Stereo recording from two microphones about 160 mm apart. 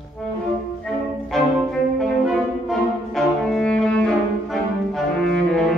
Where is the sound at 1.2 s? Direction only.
Centre (ahead or behind).